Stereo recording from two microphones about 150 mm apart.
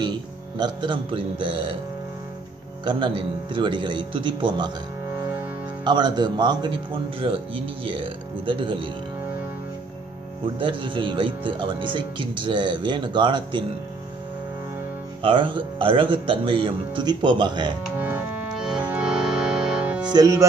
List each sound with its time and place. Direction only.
0.0 s speech: 30° right (ahead or behind)
2.8 s speech: 30° right (ahead or behind)
5.1 s music: 20° right (ahead or behind)
5.9 s speech: 30° right (ahead or behind)
10.4 s speech: 35° right (ahead or behind)
15.2 s speech: 35° right (ahead or behind)
17.9 s music: 15° right (ahead or behind)
20.1 s speech: 25° right (ahead or behind)